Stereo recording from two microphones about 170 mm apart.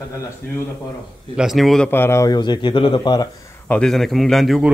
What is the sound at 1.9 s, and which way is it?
A man's voice, 15° left (ahead or behind).